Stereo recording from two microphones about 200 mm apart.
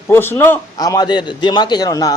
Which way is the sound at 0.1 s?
10° left (ahead or behind).